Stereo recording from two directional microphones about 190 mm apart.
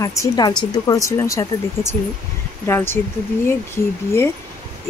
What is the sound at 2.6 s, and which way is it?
Speech, 10° left (ahead or behind).